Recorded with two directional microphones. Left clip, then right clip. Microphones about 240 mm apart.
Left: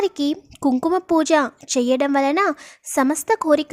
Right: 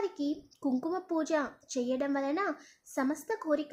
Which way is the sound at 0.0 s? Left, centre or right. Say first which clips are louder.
Left 13 dB; left.